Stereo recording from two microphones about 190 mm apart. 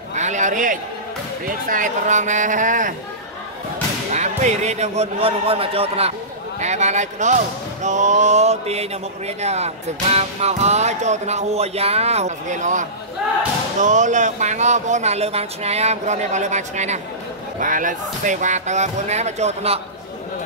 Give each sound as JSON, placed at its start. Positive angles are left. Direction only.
{"t": 0.1, "sound": "a sound", "side_deg": -40}
{"t": 1.4, "sound": "speech", "side_deg": -45}
{"t": 4.1, "sound": "speech", "side_deg": -35}